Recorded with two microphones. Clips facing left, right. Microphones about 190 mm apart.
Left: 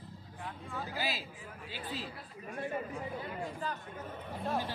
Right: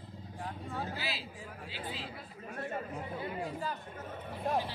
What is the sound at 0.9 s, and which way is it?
Speech, 45° left (ahead or behind).